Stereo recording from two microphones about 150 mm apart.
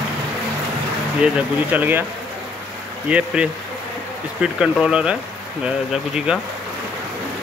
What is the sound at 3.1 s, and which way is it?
Speech, 10° right (ahead or behind).